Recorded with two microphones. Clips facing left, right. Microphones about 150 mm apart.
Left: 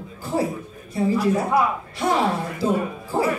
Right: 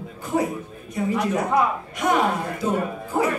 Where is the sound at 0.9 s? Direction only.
30° left (ahead or behind).